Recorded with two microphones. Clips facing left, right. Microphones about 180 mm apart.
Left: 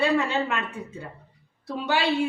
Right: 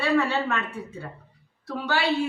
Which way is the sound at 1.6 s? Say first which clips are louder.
Left 1 dB; 20° left (ahead or behind).